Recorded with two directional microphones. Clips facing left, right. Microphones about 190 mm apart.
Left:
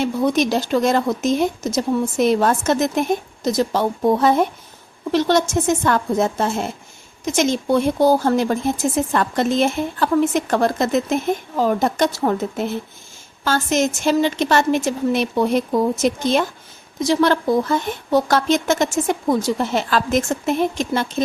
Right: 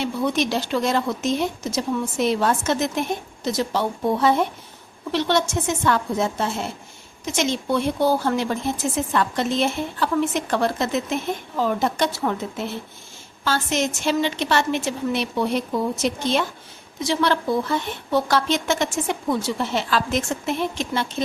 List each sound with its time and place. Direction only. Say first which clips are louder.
0.0 s a woman's voice: left 4 dB; 45° left (ahead or behind)